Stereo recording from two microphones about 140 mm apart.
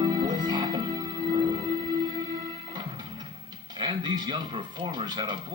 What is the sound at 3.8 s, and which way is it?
Speech, 30° right (ahead or behind).